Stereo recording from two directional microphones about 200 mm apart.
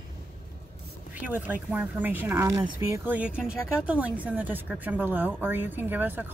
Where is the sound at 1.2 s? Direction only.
10° right (ahead or behind).